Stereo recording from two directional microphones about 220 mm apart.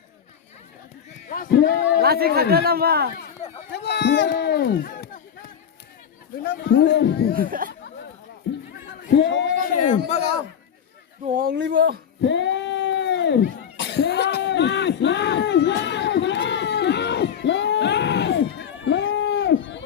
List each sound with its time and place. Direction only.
1.3 s speech: 45° left (ahead or behind)
2.0 s speech: 45° right (ahead or behind)
3.7 s speech: 50° left (ahead or behind)
6.4 s speech: 50° left (ahead or behind)
8.4 s a sound: 50° left (ahead or behind)
9.1 s speech: 55° left (ahead or behind)
11.3 s speech: 40° right (ahead or behind)
12.2 s cat: 55° left (ahead or behind)